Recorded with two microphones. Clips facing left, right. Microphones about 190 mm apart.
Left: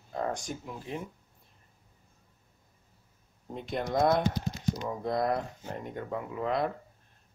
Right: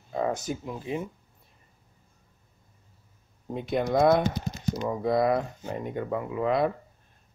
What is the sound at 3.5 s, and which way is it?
Speech, 5° right (ahead or behind).